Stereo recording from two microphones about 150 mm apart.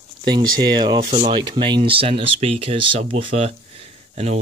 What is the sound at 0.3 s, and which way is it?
Speech, 30° right (ahead or behind).